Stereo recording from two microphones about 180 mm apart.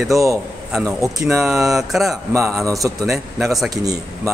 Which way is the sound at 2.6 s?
20° right (ahead or behind).